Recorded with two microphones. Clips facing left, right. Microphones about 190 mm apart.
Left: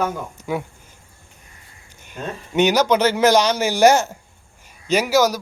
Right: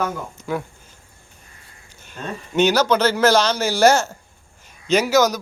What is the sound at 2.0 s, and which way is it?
Speech, 15° left (ahead or behind).